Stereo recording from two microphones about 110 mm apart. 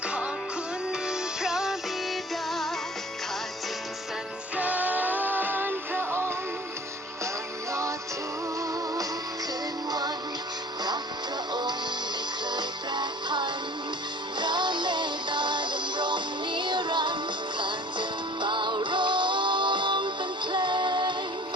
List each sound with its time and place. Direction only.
1.0 s music: 5° right (ahead or behind)
4.5 s music: 15° right (ahead or behind)
7.7 s music: 25° right (ahead or behind)
12.5 s music: 45° right (ahead or behind)